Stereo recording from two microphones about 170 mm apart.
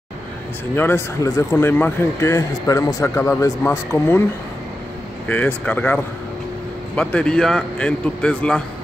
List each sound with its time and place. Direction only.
0.7 s speech: 15° left (ahead or behind)
5.3 s speech: 10° left (ahead or behind)
7.0 s a man's voice: 5° left (ahead or behind)